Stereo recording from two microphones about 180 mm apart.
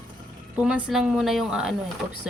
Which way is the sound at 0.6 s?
5° right (ahead or behind).